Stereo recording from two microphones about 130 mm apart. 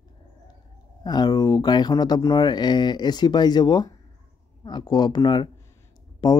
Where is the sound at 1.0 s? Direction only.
35° left (ahead or behind).